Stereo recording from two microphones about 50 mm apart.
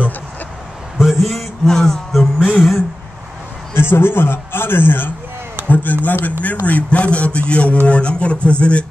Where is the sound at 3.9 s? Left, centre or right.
Left.